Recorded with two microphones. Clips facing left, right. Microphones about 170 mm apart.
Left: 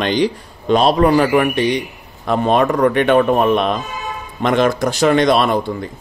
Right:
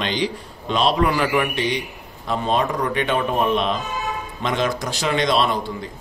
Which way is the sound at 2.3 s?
60° left (ahead or behind).